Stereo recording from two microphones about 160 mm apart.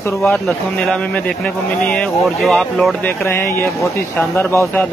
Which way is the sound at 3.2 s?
15° left (ahead or behind).